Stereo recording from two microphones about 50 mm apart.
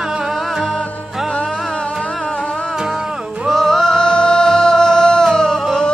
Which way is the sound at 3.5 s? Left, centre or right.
Centre.